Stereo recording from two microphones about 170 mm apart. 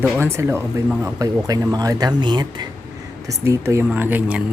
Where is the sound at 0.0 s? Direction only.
15° right (ahead or behind).